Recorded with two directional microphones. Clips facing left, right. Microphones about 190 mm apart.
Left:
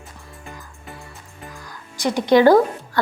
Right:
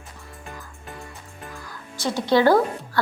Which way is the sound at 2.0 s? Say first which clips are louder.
Left 4 dB; 15° left (ahead or behind).